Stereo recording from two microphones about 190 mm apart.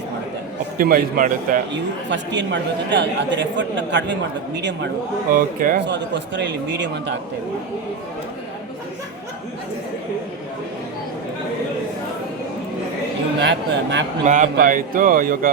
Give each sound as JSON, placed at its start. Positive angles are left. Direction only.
{"t": 0.8, "sound": "speech", "side_deg": -50}
{"t": 2.0, "sound": "speech", "side_deg": -70}
{"t": 5.3, "sound": "speech", "side_deg": -45}
{"t": 5.8, "sound": "speech", "side_deg": -70}
{"t": 13.4, "sound": "speech", "side_deg": -65}
{"t": 14.3, "sound": "speech", "side_deg": -40}